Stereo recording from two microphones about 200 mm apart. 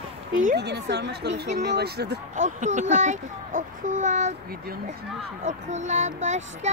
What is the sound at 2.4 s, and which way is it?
A child's voice, 40° right (ahead or behind).